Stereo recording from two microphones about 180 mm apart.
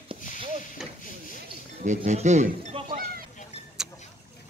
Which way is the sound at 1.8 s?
40° right (ahead or behind).